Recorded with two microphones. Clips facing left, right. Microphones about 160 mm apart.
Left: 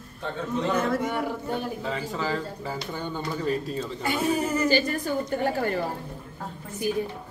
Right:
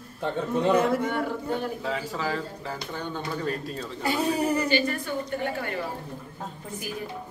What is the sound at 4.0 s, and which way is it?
Speech, 35° right (ahead or behind).